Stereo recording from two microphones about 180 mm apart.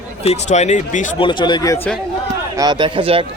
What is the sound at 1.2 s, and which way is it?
Speech, 25° left (ahead or behind).